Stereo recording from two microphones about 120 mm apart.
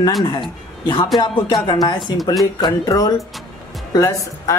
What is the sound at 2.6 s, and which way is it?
Speech, 35° left (ahead or behind).